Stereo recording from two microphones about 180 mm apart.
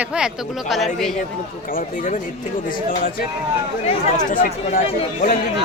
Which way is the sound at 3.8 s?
35° left (ahead or behind).